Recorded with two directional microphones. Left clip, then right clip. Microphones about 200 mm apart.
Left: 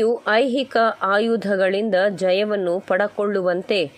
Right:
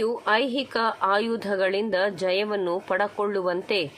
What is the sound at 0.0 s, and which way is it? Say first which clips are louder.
A woman's voice: left 5 dB; 20° left (ahead or behind).